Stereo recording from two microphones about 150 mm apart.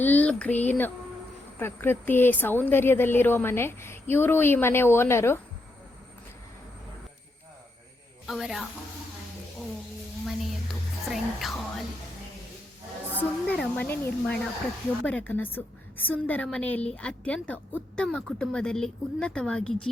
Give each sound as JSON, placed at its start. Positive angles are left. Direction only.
{"t": 0.0, "sound": "a woman's voice", "side_deg": 10}
{"t": 8.3, "sound": "speech", "side_deg": 0}
{"t": 11.1, "sound": "music", "side_deg": 0}
{"t": 13.1, "sound": "a woman's voice", "side_deg": 10}